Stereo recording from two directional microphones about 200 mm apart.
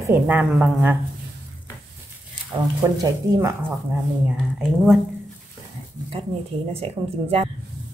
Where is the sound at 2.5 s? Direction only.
25° right (ahead or behind).